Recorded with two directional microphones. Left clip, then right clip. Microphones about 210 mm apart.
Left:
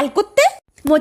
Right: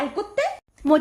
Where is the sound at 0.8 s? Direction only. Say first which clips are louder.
Left 2 dB; 15° left (ahead or behind).